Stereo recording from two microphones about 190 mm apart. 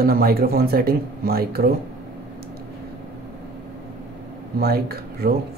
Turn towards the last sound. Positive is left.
turn(degrees=-55)  # may be behind; listen again after turning